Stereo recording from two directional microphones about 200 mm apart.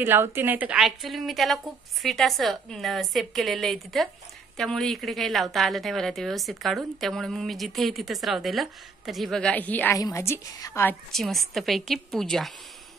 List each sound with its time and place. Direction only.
0.0 s a woman's voice: 10° right (ahead or behind)